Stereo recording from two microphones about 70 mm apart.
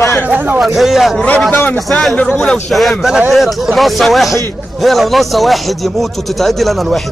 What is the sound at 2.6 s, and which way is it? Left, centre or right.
A man's voice, centre.